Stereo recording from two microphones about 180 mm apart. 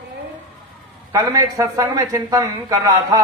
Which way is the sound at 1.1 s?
20° right (ahead or behind).